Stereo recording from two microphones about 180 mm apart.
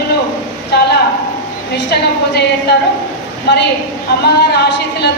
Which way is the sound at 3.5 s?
65° left (ahead or behind).